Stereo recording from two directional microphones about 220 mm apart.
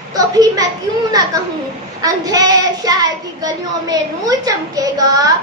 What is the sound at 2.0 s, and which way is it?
Speech, 15° right (ahead or behind).